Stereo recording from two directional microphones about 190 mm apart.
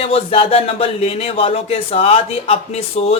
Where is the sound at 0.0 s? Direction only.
30° left (ahead or behind).